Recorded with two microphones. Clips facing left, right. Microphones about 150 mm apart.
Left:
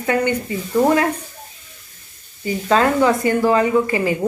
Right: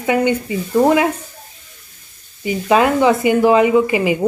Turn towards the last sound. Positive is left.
turn(degrees=-15)  # may be behind; listen again after turning